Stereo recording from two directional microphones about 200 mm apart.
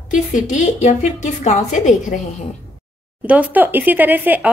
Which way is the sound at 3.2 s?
5° right (ahead or behind).